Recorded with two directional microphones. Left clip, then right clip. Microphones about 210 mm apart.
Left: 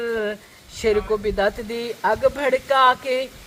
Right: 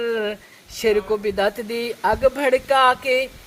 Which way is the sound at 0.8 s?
30° right (ahead or behind).